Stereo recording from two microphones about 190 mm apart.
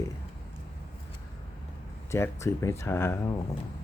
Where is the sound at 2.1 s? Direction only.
15° left (ahead or behind).